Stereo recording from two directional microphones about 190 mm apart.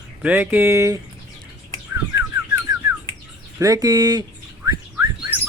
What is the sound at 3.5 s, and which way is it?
Speech, 15° right (ahead or behind).